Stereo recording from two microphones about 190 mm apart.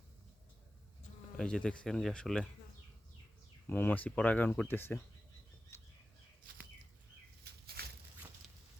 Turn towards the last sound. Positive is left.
turn(degrees=-55)  # may be behind; listen again after turning